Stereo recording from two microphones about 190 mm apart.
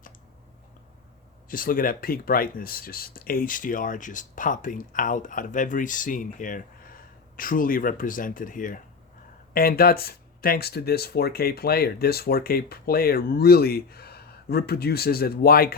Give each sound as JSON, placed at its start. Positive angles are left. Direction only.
{"t": 1.5, "sound": "speech", "side_deg": 50}